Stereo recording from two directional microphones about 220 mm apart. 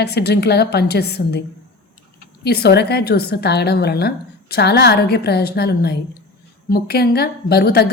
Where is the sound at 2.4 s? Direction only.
45° left (ahead or behind).